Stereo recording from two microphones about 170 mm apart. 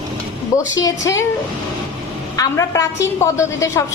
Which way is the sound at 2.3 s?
20° left (ahead or behind).